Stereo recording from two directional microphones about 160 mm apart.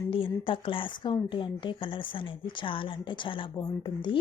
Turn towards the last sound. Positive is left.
turn(degrees=30)  # may be behind; listen again after turning